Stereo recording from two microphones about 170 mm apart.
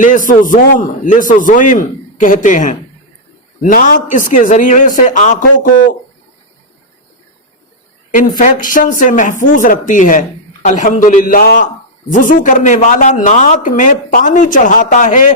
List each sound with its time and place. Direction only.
0.0 s speech: 50° left (ahead or behind)
8.1 s speech: 50° left (ahead or behind)